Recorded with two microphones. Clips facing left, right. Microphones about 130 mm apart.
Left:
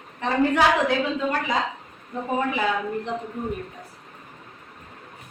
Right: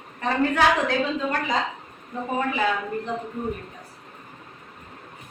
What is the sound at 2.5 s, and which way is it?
Speech, 20° left (ahead or behind).